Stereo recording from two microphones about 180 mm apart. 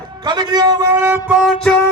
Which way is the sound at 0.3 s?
25° right (ahead or behind).